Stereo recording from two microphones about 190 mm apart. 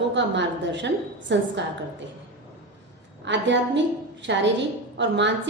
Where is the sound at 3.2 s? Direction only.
70° right (ahead or behind).